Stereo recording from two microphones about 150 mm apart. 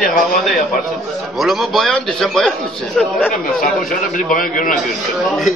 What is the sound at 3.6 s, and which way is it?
A man's voice, 65° left (ahead or behind).